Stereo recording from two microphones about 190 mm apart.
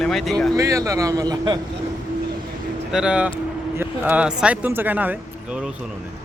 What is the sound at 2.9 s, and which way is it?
Speech, 5° right (ahead or behind).